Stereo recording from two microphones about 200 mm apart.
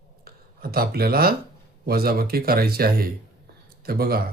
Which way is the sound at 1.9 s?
50° right (ahead or behind).